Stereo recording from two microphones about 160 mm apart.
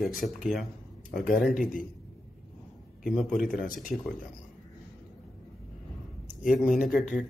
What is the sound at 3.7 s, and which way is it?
Speech, 60° left (ahead or behind).